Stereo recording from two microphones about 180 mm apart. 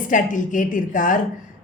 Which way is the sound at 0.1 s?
45° left (ahead or behind).